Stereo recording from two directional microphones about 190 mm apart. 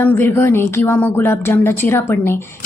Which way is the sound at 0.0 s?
10° left (ahead or behind).